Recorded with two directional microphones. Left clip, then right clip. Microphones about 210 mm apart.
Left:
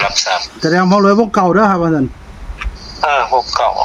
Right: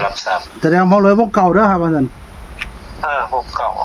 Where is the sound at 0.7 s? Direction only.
10° left (ahead or behind).